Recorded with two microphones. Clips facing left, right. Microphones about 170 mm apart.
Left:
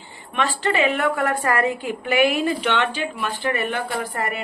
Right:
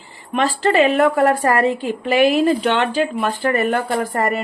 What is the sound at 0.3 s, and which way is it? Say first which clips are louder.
A woman's voice: right 6 dB; 40° right (ahead or behind).